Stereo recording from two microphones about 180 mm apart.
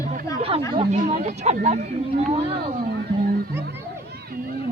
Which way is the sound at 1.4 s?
40° right (ahead or behind).